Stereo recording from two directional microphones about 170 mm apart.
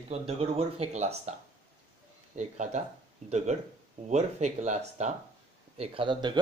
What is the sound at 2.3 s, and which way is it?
Speech, 45° right (ahead or behind).